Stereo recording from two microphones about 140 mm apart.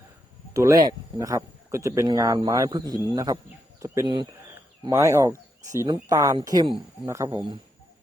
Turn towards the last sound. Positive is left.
turn(degrees=-20)  # may be behind; listen again after turning